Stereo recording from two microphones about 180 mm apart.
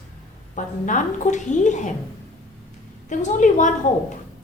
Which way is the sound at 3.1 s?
45° left (ahead or behind).